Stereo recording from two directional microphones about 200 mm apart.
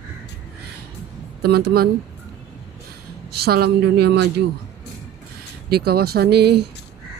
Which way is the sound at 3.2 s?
50° right (ahead or behind).